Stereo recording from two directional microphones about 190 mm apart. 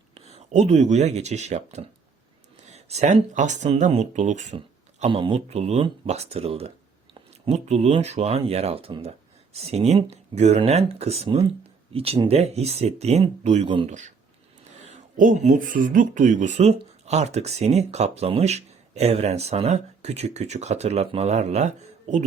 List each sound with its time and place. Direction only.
0.1 s speech: 35° right (ahead or behind)
14.8 s speech: 40° right (ahead or behind)